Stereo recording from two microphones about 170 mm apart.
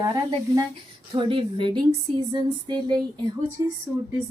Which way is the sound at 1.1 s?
30° right (ahead or behind).